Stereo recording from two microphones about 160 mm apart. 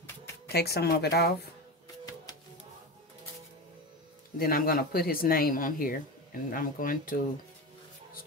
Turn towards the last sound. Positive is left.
turn(degrees=60)  # may be behind; listen again after turning